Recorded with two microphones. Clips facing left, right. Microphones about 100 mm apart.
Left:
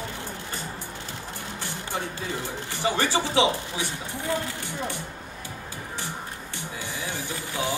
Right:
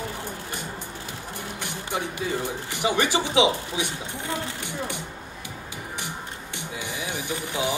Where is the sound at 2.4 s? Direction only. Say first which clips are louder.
Right 2 dB; 15° right (ahead or behind).